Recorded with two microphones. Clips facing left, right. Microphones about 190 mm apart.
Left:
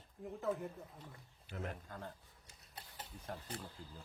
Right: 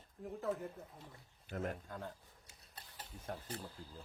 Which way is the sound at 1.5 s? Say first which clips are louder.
Right 4 dB; 50° right (ahead or behind).